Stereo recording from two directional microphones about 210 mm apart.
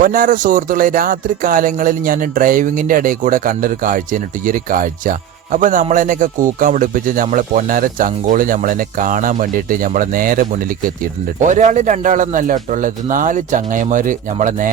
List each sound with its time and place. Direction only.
0.0 s speech: 40° right (ahead or behind)